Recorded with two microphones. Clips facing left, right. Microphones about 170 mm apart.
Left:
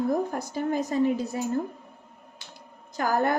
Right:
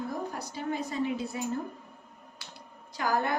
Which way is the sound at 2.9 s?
45° left (ahead or behind).